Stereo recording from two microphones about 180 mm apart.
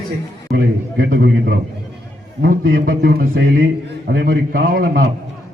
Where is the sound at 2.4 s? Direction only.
55° right (ahead or behind).